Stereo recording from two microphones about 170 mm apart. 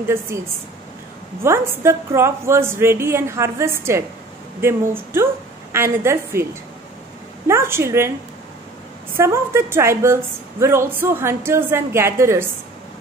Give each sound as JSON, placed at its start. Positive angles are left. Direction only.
{"t": 0.3, "sound": "a woman's voice", "side_deg": -15}
{"t": 7.4, "sound": "a woman's voice", "side_deg": -15}
{"t": 9.1, "sound": "a woman's voice", "side_deg": -15}